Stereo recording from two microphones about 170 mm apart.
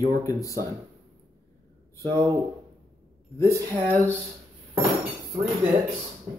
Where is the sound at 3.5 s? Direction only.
15° right (ahead or behind).